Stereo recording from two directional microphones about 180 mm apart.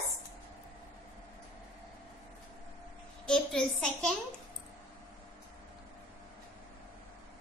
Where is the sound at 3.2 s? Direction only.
5° left (ahead or behind).